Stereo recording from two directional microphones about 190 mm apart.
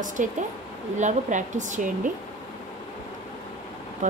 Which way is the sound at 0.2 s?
40° right (ahead or behind).